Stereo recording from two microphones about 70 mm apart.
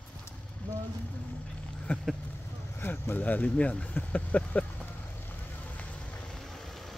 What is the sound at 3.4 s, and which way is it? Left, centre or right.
Speech, centre.